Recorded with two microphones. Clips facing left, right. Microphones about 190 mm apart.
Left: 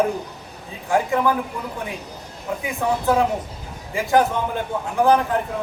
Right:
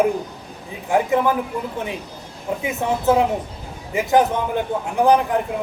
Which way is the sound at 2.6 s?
20° right (ahead or behind).